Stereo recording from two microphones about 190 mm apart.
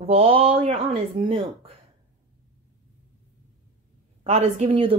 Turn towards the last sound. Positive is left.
turn(degrees=-30)  # may be behind; listen again after turning